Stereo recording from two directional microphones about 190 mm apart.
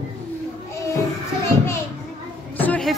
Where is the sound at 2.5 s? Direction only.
5° left (ahead or behind).